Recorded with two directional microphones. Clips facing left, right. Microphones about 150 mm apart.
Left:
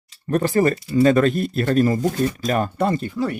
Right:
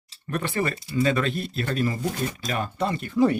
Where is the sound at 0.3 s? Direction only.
35° left (ahead or behind).